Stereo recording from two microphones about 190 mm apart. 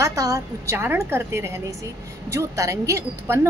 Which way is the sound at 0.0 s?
15° right (ahead or behind).